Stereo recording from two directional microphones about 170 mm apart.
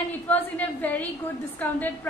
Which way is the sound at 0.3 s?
10° left (ahead or behind).